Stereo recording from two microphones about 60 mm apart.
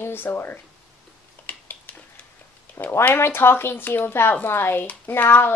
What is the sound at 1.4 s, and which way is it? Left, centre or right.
Typing, left.